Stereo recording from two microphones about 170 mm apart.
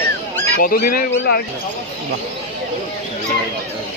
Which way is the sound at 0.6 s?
60° left (ahead or behind).